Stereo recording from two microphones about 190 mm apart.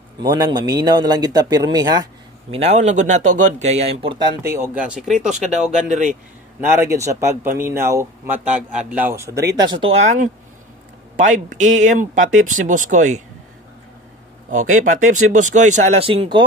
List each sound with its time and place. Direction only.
0.2 s a man's voice: 20° right (ahead or behind)
2.5 s a man's voice: 35° right (ahead or behind); by 5.4 s centre (ahead or behind)
6.6 s speech: 10° right (ahead or behind); by 13.2 s 40° right (ahead or behind)
14.5 s speech: 40° right (ahead or behind)